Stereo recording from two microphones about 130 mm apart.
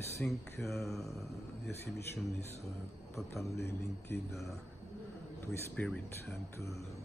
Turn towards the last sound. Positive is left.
turn(degrees=25)  # may be behind; listen again after turning